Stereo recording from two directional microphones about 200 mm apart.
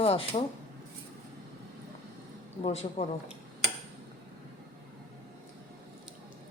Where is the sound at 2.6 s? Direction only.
30° left (ahead or behind).